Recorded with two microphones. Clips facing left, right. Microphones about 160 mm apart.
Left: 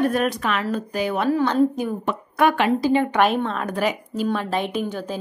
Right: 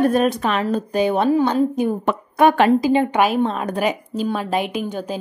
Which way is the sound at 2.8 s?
25° right (ahead or behind).